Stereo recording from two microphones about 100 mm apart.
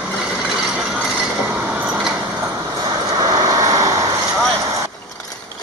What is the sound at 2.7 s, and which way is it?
Vehicle, 40° right (ahead or behind).